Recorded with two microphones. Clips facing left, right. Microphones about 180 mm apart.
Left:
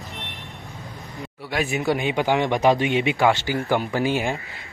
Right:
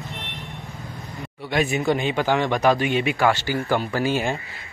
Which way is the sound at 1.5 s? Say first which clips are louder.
Right 2 dB; centre (ahead or behind).